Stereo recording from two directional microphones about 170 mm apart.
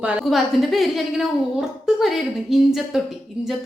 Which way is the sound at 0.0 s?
5° right (ahead or behind).